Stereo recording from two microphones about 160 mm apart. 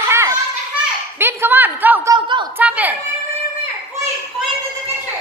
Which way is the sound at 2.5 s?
10° right (ahead or behind).